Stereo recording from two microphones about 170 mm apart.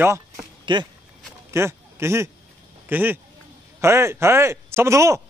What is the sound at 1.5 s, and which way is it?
A man's voice, 15° right (ahead or behind).